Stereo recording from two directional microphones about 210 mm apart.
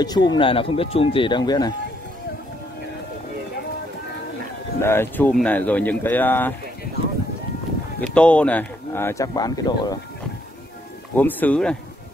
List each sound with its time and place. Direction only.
0.0 s speech: 20° left (ahead or behind)
4.8 s speech: 10° left (ahead or behind)
8.0 s speech: 5° left (ahead or behind)
11.1 s speech: 10° left (ahead or behind)